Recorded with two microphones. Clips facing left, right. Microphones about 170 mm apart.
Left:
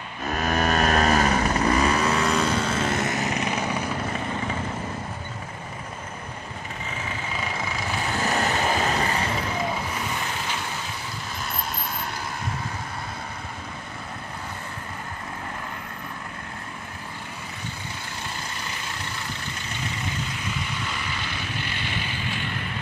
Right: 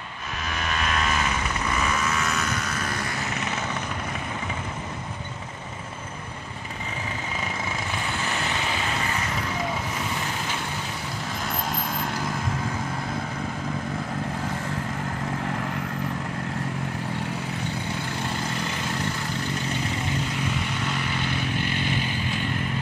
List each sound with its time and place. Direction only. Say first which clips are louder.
0.4 s vehicle: left 7 dB; 45° left (ahead or behind); by 3.8 s 15° left (ahead or behind)
8.3 s vehicle: left 8 dB; 45° left (ahead or behind)